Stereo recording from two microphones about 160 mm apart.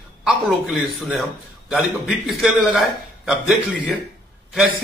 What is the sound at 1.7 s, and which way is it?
A man's voice, centre (ahead or behind).